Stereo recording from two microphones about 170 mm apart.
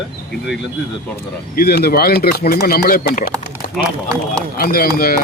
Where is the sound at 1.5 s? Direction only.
65° left (ahead or behind).